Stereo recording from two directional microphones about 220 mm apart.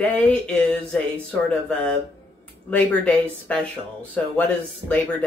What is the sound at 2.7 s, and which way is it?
Speech, 5° left (ahead or behind).